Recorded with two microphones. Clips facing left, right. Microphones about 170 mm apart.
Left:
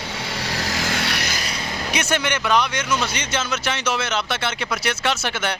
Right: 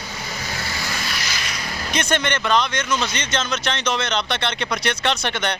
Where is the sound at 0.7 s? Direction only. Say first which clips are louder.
Left 4 dB; 85° left; by 1.3 s 65° left (ahead or behind).